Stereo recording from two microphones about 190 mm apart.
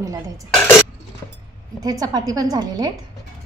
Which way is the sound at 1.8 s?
20° right (ahead or behind).